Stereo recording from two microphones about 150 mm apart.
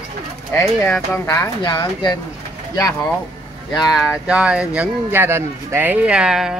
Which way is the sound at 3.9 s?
Centre (ahead or behind).